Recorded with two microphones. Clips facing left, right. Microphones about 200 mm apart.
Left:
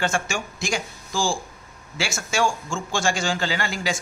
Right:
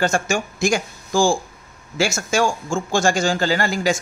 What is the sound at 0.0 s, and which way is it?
Speech, 40° right (ahead or behind).